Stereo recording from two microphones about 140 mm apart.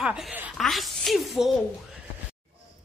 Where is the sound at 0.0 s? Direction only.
5° right (ahead or behind).